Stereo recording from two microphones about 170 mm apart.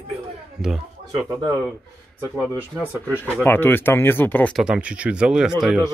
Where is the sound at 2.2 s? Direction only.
15° right (ahead or behind).